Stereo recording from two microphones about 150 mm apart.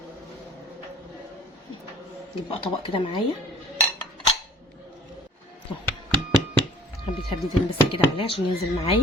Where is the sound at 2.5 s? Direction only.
35° left (ahead or behind).